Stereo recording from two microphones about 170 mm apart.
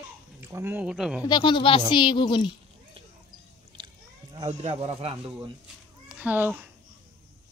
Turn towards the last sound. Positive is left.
turn(degrees=-10)  # may be behind; listen again after turning